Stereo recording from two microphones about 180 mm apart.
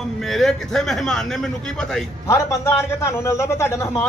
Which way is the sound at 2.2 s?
15° left (ahead or behind).